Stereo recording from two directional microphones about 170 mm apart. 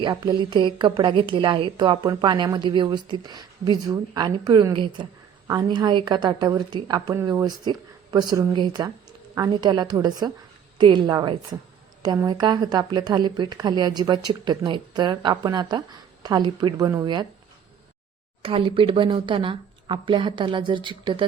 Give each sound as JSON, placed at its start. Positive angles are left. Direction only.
{"t": 0.0, "sound": "a woman's voice", "side_deg": -25}
{"t": 18.4, "sound": "a woman's voice", "side_deg": -30}